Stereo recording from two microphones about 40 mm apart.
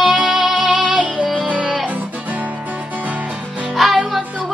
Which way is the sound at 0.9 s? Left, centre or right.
Right.